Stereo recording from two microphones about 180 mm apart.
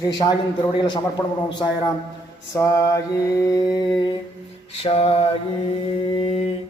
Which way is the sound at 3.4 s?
20° left (ahead or behind).